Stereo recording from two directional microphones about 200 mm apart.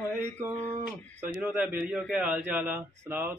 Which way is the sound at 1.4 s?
5° right (ahead or behind).